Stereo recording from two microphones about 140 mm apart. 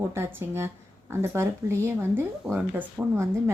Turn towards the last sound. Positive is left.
turn(degrees=-15)  # may be behind; listen again after turning